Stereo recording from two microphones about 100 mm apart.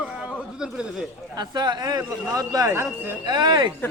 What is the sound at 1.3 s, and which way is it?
Speech, 45° right (ahead or behind).